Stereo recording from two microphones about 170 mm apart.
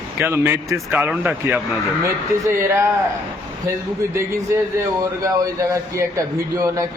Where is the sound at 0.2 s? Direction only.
15° right (ahead or behind).